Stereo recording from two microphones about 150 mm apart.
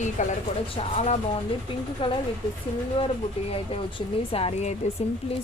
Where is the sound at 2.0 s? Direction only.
35° left (ahead or behind).